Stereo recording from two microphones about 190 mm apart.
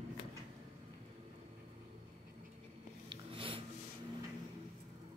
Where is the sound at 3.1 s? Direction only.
30° right (ahead or behind).